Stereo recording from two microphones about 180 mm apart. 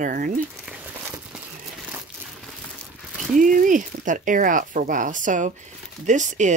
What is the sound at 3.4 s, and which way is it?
Speech, 45° right (ahead or behind).